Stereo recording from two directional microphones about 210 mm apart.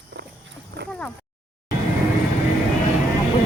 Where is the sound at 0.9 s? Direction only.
5° left (ahead or behind).